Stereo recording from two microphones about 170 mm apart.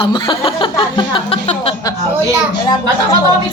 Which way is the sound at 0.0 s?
30° left (ahead or behind).